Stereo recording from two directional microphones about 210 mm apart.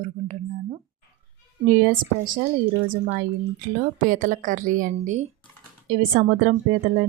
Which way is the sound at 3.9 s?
40° right (ahead or behind).